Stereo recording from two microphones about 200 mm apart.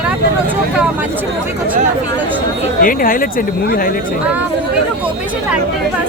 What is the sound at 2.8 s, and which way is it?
Speech, 45° left (ahead or behind).